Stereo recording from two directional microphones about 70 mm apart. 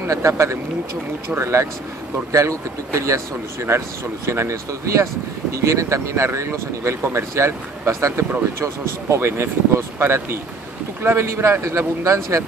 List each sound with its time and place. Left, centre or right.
0.0 s speech: right
1.4 s speech: right